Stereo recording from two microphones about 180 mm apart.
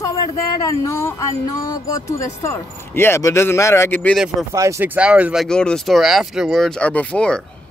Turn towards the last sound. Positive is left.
turn(degrees=5)  # may be behind; listen again after turning